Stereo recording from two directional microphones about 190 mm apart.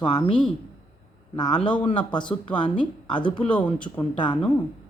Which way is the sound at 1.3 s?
20° left (ahead or behind).